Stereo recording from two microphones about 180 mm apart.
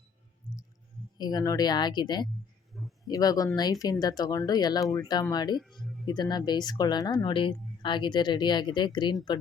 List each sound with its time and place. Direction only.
1.2 s speech: 20° left (ahead or behind)
2.7 s a sound: centre (ahead or behind)
3.1 s speech: 20° left (ahead or behind)
5.5 s speech: centre (ahead or behind)
6.1 s speech: 25° left (ahead or behind)